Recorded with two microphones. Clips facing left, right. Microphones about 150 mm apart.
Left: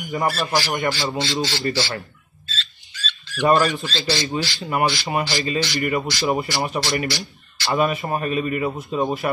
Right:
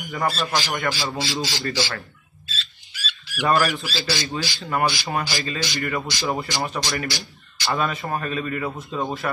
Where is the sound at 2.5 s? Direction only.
10° right (ahead or behind).